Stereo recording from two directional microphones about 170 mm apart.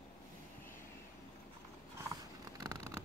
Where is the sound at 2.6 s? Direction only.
20° right (ahead or behind).